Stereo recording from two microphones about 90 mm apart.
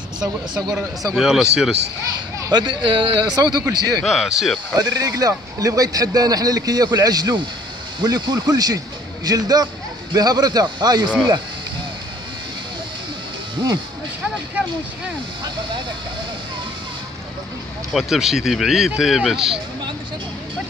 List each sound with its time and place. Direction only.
0.6 s speech: 40° right (ahead or behind)
1.1 s speech: 5° right (ahead or behind)
2.5 s speech: 60° right (ahead or behind)
3.3 s speech: 50° right (ahead or behind)
4.0 s speech: 5° right (ahead or behind)
4.7 s speech: 45° right (ahead or behind)
17.9 s speech: 5° right (ahead or behind)